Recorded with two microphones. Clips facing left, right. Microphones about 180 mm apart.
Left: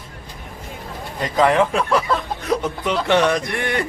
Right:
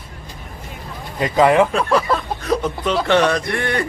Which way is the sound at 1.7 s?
15° left (ahead or behind).